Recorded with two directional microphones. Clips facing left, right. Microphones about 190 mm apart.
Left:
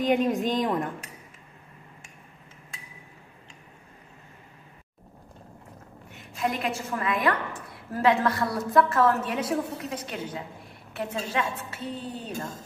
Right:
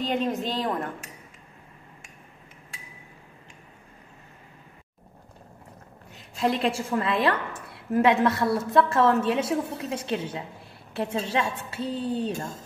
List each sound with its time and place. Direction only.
0.0 s a woman's voice: 15° left (ahead or behind)
6.1 s a woman's voice: 30° right (ahead or behind)
7.9 s a woman's voice: 20° right (ahead or behind)